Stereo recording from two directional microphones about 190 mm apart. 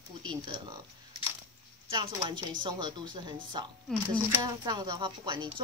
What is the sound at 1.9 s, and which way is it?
Speech, 25° right (ahead or behind).